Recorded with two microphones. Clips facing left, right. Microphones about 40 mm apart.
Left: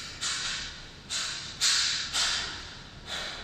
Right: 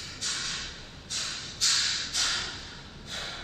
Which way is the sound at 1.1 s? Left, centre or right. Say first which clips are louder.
Left 1 dB; left.